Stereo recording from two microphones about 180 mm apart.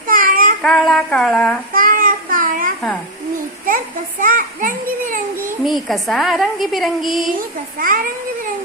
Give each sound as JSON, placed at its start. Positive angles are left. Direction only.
{"t": 0.1, "sound": "child singing", "side_deg": -50}
{"t": 0.6, "sound": "a woman's voice", "side_deg": 0}
{"t": 1.7, "sound": "child singing", "side_deg": -50}
{"t": 4.2, "sound": "a child's voice", "side_deg": -50}
{"t": 5.6, "sound": "a woman's voice", "side_deg": 0}
{"t": 7.8, "sound": "a child's voice", "side_deg": -50}